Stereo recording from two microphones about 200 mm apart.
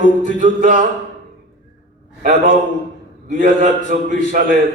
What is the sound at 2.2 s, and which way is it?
A man's voice, 45° right (ahead or behind).